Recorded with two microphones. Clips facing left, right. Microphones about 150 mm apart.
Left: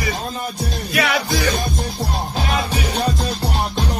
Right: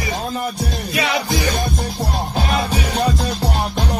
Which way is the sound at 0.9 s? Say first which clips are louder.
Left 1 dB; 20° right (ahead or behind).